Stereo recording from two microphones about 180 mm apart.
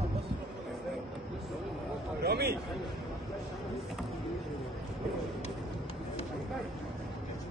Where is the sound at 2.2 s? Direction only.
60° right (ahead or behind).